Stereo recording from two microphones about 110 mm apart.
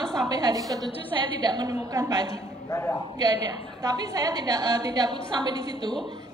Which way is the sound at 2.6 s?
25° left (ahead or behind).